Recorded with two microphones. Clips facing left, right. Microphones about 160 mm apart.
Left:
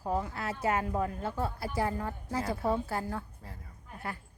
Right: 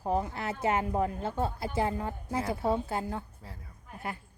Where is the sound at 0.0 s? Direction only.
25° right (ahead or behind).